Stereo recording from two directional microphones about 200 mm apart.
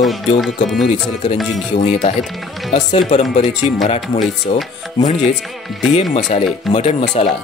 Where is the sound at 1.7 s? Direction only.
35° left (ahead or behind).